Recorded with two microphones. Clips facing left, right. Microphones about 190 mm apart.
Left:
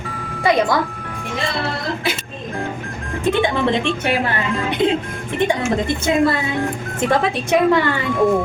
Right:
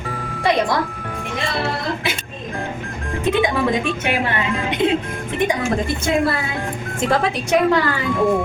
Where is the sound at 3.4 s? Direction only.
30° left (ahead or behind).